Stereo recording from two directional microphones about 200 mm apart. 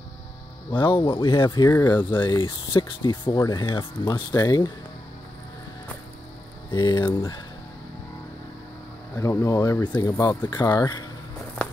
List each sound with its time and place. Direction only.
0.7 s speech: 25° left (ahead or behind)
2.1 s speech: 25° left (ahead or behind)
6.7 s speech: 20° left (ahead or behind)
9.2 s speech: 15° left (ahead or behind)